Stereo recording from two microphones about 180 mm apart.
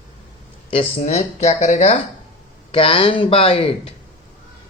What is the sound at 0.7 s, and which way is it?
Speech, 35° left (ahead or behind).